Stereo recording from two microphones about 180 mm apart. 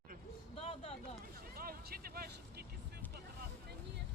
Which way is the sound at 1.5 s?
55° right (ahead or behind).